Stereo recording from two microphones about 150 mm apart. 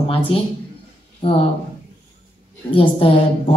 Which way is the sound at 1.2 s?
40° left (ahead or behind).